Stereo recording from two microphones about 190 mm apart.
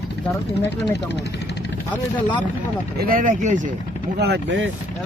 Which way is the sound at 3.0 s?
50° right (ahead or behind).